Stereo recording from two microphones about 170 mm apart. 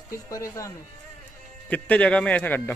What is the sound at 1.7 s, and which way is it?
Speech, 10° left (ahead or behind).